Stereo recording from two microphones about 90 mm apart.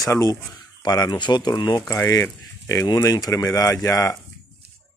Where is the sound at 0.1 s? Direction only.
35° left (ahead or behind).